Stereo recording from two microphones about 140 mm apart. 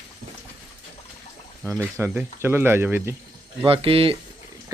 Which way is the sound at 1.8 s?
15° right (ahead or behind).